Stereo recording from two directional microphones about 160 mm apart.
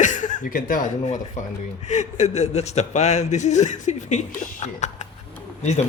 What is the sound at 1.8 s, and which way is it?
Speech, 50° left (ahead or behind).